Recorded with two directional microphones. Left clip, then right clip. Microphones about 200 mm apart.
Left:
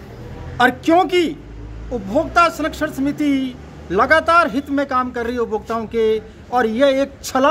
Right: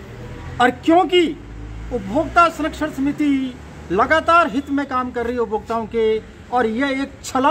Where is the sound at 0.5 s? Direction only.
25° left (ahead or behind).